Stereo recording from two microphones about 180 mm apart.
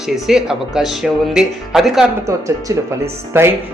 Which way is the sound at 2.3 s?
15° right (ahead or behind).